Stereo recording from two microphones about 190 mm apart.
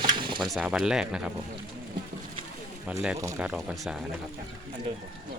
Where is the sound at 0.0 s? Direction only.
25° right (ahead or behind).